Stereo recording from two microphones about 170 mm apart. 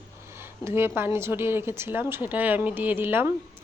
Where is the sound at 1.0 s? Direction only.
15° right (ahead or behind).